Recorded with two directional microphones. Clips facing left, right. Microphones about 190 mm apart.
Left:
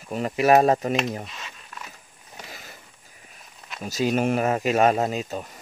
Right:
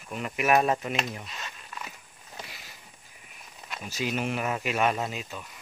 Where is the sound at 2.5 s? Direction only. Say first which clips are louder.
Left 6 dB; 45° left (ahead or behind).